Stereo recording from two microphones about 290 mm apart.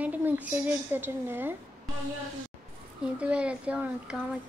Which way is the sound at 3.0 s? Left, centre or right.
Centre.